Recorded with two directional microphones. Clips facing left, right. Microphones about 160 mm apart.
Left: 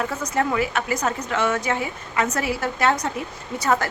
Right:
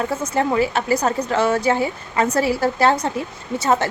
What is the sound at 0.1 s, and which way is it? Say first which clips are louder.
A woman's voice: right 3 dB; 30° right (ahead or behind).